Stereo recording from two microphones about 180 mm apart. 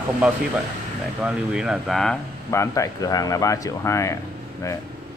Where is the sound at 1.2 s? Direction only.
5° right (ahead or behind).